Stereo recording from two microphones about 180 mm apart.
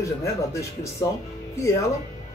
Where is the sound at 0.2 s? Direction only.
15° left (ahead or behind).